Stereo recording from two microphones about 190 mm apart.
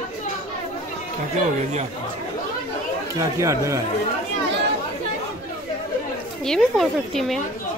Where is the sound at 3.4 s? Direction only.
15° right (ahead or behind).